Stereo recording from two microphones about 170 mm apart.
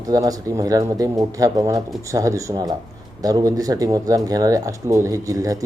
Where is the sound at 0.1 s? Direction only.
20° right (ahead or behind).